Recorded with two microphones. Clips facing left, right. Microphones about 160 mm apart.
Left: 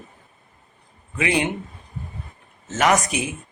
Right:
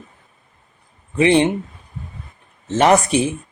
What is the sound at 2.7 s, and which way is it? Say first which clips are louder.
Speech: right 6 dB; 30° right (ahead or behind).